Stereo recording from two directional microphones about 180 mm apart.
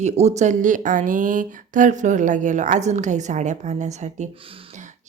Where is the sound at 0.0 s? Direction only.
40° right (ahead or behind).